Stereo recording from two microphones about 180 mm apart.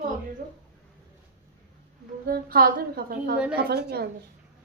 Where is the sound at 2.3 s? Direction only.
55° right (ahead or behind).